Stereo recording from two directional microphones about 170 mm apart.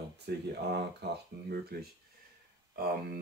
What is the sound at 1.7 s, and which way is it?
Speech, 65° right (ahead or behind).